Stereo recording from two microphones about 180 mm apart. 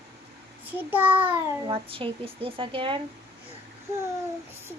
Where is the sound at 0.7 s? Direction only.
10° right (ahead or behind).